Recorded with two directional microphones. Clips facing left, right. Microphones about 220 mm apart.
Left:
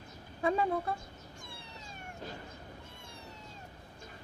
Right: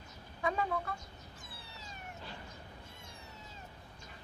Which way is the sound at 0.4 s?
30° left (ahead or behind).